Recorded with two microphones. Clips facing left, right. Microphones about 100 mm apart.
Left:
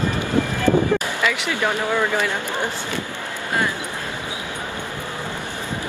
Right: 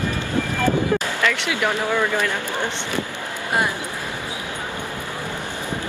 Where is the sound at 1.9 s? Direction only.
15° left (ahead or behind).